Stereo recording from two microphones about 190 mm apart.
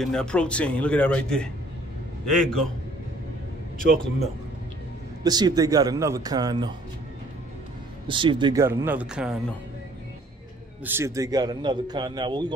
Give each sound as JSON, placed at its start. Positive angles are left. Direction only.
{"t": 0.0, "sound": "speech", "side_deg": 5}
{"t": 5.2, "sound": "a man's voice", "side_deg": -20}
{"t": 8.1, "sound": "a man's voice", "side_deg": -25}
{"t": 8.6, "sound": "speech", "side_deg": -10}
{"t": 10.8, "sound": "a man's voice", "side_deg": -10}